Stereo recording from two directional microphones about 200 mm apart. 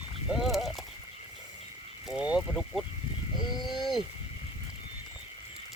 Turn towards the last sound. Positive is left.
turn(degrees=0)  # may be behind; listen again after turning